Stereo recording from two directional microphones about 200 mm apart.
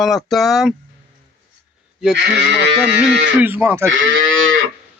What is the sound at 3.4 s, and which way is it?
Speech, 10° right (ahead or behind).